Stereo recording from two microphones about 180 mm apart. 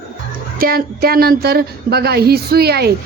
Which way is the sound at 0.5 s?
55° right (ahead or behind).